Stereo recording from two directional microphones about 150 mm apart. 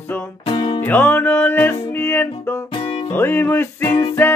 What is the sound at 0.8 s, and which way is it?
Music, 10° left (ahead or behind).